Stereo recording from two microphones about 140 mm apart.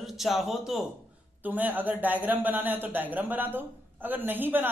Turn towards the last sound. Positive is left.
turn(degrees=-15)  # may be behind; listen again after turning